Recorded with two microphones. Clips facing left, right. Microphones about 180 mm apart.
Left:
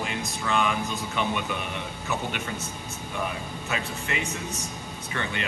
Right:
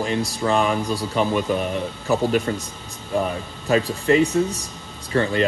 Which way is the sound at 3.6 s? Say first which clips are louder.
Right 14 dB; 35° right (ahead or behind).